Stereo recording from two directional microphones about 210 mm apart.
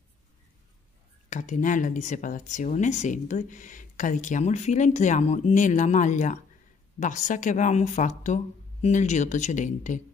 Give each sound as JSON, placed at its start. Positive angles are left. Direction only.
{"t": 1.3, "sound": "speech", "side_deg": 35}